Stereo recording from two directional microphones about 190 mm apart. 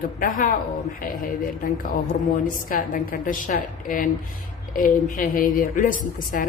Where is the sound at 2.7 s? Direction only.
45° left (ahead or behind).